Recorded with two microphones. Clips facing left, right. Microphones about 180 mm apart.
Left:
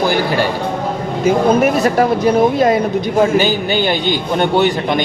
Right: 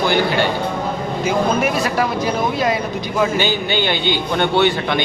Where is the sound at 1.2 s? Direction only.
45° left (ahead or behind).